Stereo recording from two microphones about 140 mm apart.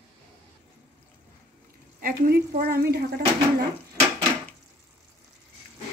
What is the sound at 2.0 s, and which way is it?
A woman's voice, 90° right.